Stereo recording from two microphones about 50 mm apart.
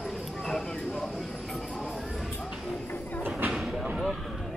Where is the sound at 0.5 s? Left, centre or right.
Centre.